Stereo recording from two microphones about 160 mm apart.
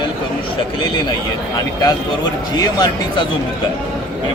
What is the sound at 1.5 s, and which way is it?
A man's voice, 25° left (ahead or behind).